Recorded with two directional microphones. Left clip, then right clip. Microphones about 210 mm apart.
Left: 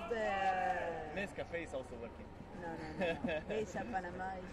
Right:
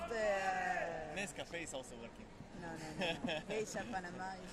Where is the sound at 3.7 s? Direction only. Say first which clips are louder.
Left 2 dB; 10° right (ahead or behind).